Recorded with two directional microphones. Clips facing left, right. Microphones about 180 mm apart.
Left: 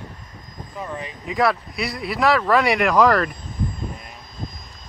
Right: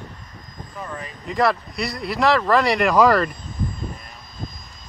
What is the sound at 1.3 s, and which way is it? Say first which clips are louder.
Speech: even; 5° left (ahead or behind).